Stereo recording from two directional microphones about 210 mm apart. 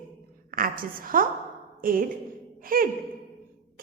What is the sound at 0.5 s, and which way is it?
A woman's voice, 40° right (ahead or behind).